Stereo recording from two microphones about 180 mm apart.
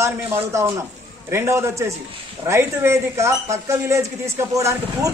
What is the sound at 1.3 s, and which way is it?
A man's voice, 15° right (ahead or behind).